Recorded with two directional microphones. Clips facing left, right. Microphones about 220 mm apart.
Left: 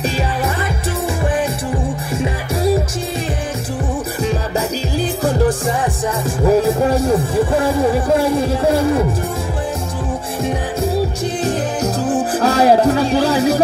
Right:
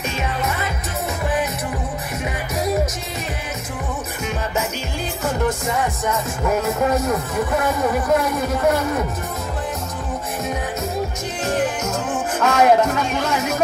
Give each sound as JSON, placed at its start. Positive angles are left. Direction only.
{"t": 4.2, "sound": "music", "side_deg": 35}
{"t": 11.4, "sound": "music", "side_deg": 35}